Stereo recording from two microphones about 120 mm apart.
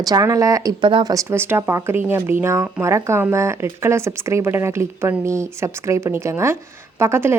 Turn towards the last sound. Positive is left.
turn(degrees=-20)  # may be behind; listen again after turning